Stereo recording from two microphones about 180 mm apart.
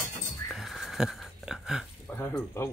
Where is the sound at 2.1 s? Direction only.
10° left (ahead or behind).